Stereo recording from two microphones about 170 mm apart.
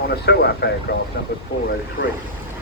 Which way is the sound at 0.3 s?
70° left (ahead or behind).